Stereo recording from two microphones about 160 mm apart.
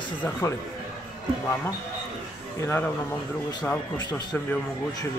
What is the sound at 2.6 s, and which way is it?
Speech, 15° left (ahead or behind).